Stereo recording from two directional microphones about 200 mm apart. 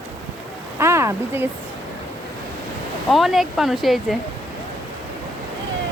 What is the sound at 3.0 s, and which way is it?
Speech, centre (ahead or behind).